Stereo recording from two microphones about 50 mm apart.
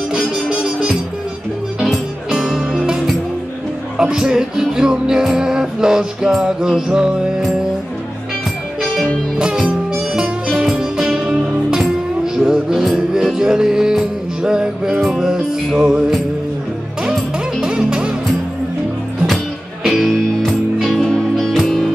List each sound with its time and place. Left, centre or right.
0.1 s music: centre
2.3 s music: centre
4.0 s music: centre
10.5 s music: centre
17.6 s music: centre
19.8 s music: centre